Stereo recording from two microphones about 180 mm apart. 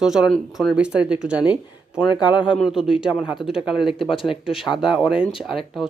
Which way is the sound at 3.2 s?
25° left (ahead or behind).